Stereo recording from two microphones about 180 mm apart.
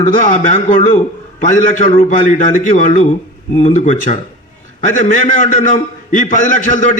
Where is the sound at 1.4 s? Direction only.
45° left (ahead or behind).